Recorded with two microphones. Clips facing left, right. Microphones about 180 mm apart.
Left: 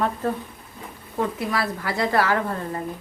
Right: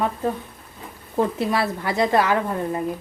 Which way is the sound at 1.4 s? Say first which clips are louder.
Right 3 dB; 25° right (ahead or behind).